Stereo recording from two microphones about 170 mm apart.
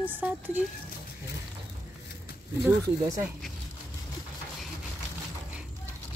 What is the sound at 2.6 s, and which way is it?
Speech, 15° right (ahead or behind).